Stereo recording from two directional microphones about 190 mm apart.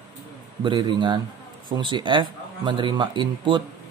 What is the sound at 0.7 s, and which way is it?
Speech, 25° right (ahead or behind).